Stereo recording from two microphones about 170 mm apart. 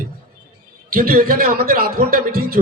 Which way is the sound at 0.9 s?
60° right (ahead or behind).